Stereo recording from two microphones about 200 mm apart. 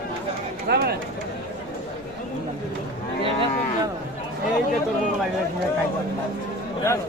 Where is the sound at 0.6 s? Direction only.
50° right (ahead or behind).